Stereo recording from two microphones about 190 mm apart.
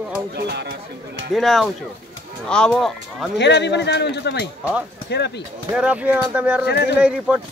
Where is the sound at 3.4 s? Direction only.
65° left (ahead or behind).